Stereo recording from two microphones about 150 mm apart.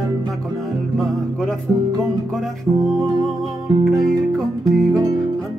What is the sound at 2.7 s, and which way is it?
Music, 20° right (ahead or behind).